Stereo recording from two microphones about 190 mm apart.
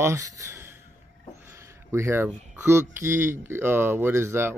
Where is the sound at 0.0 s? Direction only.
15° right (ahead or behind).